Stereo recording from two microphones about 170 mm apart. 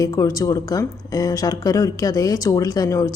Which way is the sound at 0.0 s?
20° left (ahead or behind).